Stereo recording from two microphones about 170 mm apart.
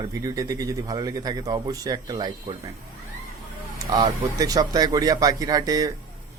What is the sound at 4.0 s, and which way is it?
Speech, 25° right (ahead or behind).